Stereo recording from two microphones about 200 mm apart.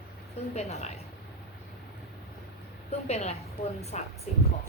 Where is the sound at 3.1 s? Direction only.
30° left (ahead or behind).